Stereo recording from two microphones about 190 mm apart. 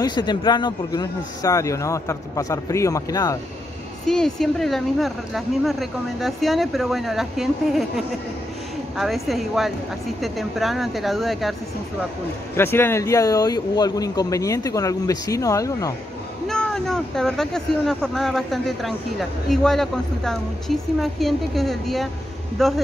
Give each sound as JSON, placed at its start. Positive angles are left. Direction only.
{"t": 0.0, "sound": "speech", "side_deg": 20}
{"t": 4.0, "sound": "speech", "side_deg": 0}
{"t": 12.5, "sound": "speech", "side_deg": 10}
{"t": 16.4, "sound": "speech", "side_deg": 5}